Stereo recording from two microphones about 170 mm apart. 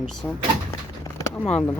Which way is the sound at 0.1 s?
Centre (ahead or behind).